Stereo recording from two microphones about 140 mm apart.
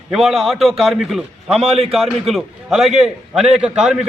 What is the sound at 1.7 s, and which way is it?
Speech, 45° right (ahead or behind).